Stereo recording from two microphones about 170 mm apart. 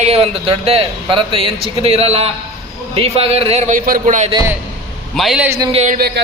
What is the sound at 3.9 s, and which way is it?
Music, 45° right (ahead or behind).